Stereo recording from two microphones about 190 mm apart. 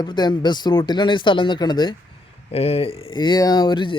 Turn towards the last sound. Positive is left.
turn(degrees=25)  # may be behind; listen again after turning